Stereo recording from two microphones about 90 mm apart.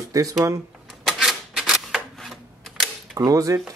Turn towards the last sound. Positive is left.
turn(degrees=-40)  # may be behind; listen again after turning